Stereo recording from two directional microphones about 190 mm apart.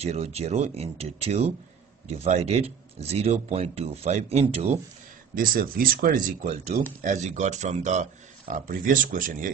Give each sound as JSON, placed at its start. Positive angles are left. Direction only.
{"t": 0.0, "sound": "speech", "side_deg": -35}
{"t": 5.3, "sound": "speech", "side_deg": -45}